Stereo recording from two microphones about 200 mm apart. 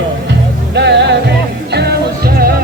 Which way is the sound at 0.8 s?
60° right (ahead or behind).